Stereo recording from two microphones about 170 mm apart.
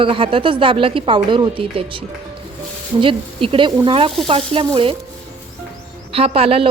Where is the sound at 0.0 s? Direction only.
30° right (ahead or behind).